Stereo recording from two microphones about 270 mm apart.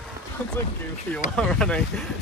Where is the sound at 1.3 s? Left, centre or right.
Centre.